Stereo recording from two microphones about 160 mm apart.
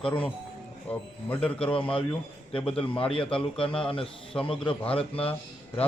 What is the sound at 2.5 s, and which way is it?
A man's voice, 35° left (ahead or behind).